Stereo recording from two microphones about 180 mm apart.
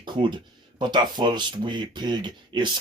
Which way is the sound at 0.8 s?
25° right (ahead or behind).